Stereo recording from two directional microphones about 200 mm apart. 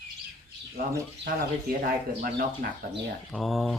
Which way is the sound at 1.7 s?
45° right (ahead or behind).